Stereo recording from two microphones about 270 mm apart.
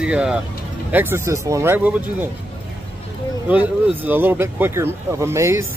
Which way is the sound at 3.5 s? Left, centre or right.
Centre.